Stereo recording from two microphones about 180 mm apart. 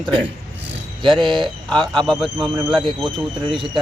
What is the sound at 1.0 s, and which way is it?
Speech, 25° right (ahead or behind).